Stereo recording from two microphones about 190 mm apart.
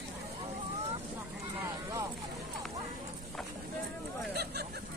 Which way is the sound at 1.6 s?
15° right (ahead or behind).